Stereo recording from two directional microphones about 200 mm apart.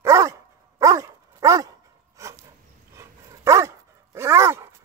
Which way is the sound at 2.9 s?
15° right (ahead or behind).